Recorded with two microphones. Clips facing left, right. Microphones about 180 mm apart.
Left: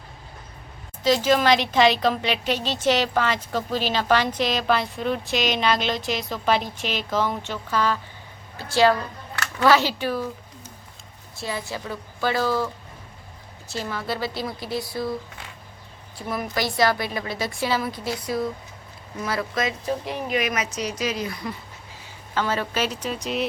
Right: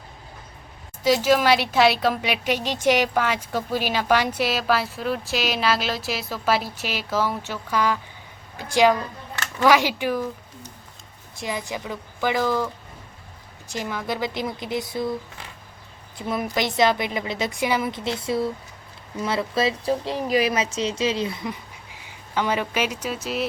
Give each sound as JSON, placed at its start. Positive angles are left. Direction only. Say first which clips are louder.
{"t": 1.0, "sound": "a woman's voice", "louder": "right 1 dB", "side_deg": -10}
{"t": 11.3, "sound": "a woman's voice", "louder": "right 1 dB", "side_deg": -15}
{"t": 16.1, "sound": "a woman's voice", "louder": "right 2 dB", "side_deg": -25}